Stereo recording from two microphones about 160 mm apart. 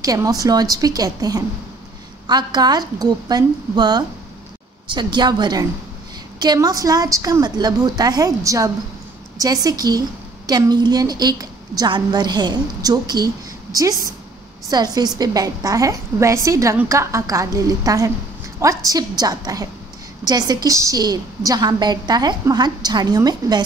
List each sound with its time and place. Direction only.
0.0 s a woman's voice: 20° right (ahead or behind)